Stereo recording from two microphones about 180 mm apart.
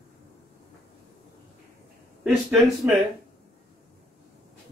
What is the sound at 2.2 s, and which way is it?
Speech, centre (ahead or behind).